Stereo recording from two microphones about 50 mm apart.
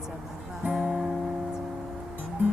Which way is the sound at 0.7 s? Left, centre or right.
Centre.